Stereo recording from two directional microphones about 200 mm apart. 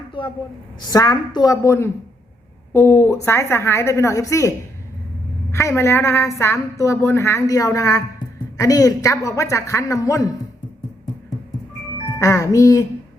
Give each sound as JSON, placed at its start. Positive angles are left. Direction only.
{"t": 0.2, "sound": "a woman's voice", "side_deg": 25}
{"t": 12.2, "sound": "a woman's voice", "side_deg": 15}